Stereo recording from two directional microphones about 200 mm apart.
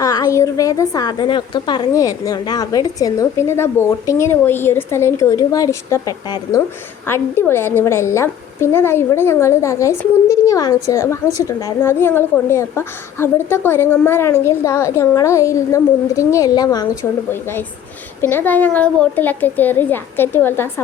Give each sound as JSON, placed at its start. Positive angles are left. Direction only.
{"t": 0.0, "sound": "a woman's voice", "side_deg": 20}
{"t": 18.2, "sound": "a woman's voice", "side_deg": 10}